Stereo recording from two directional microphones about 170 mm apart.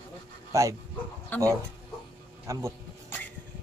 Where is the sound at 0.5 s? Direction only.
20° right (ahead or behind).